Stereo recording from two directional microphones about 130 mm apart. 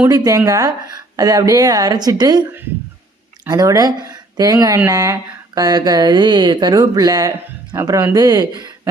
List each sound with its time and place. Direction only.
0.1 s speech: 25° right (ahead or behind)
3.5 s speech: 30° right (ahead or behind)